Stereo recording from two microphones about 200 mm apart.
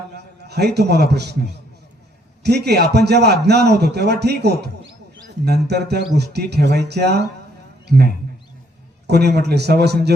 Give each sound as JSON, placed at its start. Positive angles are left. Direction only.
{"t": 0.4, "sound": "a man's voice", "side_deg": -55}